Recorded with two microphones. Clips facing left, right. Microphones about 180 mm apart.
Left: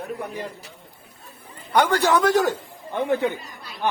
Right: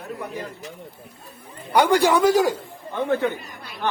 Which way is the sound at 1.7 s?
10° right (ahead or behind).